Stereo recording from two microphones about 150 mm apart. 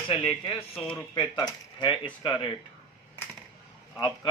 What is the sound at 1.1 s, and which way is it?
Coin, 35° left (ahead or behind).